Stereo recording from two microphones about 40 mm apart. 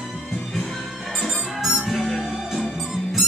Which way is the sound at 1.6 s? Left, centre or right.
Centre.